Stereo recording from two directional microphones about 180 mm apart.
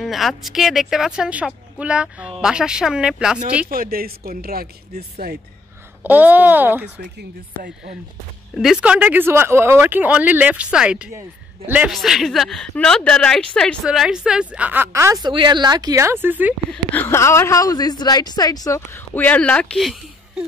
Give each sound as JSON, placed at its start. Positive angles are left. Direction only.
{"t": 0.0, "sound": "speech", "side_deg": 0}
{"t": 3.6, "sound": "speech", "side_deg": -55}
{"t": 6.0, "sound": "a woman's voice", "side_deg": -10}
{"t": 7.2, "sound": "speech", "side_deg": -65}
{"t": 8.5, "sound": "a woman's voice", "side_deg": -5}
{"t": 16.7, "sound": "a woman's voice", "side_deg": 10}